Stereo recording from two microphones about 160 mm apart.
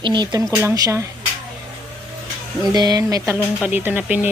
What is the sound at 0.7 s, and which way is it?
Speech, 20° right (ahead or behind).